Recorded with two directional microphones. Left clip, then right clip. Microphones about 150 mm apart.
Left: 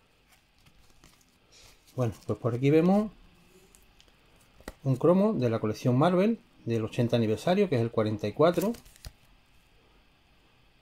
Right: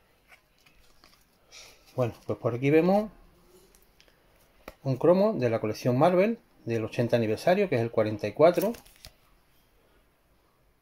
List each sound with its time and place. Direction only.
2.0 s speech: 20° left (ahead or behind)
4.6 s speech: 10° left (ahead or behind)